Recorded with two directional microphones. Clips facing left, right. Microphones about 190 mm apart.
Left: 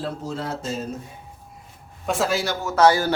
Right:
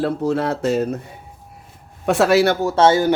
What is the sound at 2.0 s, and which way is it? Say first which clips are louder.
Speech: right 9 dB; 70° right (ahead or behind).